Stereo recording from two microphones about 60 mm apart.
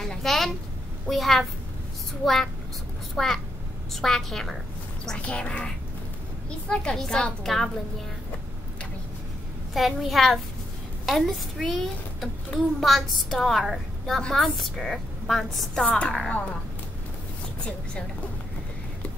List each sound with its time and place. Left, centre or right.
0.0 s a woman's voice: centre
5.2 s a woman's voice: left
6.7 s a woman's voice: centre
9.8 s a woman's voice: centre